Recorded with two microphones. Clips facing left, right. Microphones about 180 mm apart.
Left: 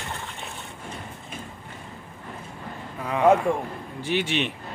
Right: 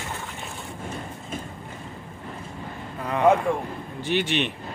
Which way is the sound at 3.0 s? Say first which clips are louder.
Left 1 dB; centre (ahead or behind).